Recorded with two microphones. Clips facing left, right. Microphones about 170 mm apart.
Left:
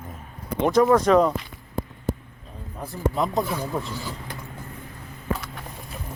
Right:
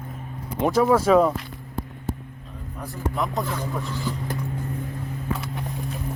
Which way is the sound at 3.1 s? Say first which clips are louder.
Left 1 dB; 20° left (ahead or behind).